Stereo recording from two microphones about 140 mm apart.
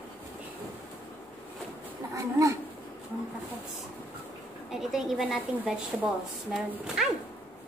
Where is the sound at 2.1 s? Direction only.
20° right (ahead or behind).